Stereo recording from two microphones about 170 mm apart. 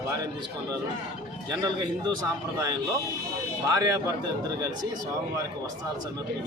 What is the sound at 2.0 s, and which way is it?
A man's voice, 20° right (ahead or behind).